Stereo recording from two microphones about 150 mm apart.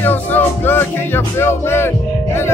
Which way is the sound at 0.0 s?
10° left (ahead or behind).